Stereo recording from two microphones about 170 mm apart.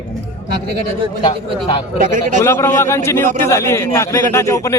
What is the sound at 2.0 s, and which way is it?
Speech, 50° right (ahead or behind).